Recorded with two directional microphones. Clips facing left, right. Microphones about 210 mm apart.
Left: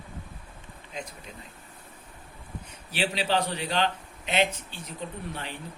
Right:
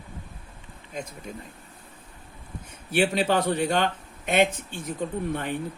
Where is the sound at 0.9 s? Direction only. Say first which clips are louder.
Right 4 dB; 50° right (ahead or behind).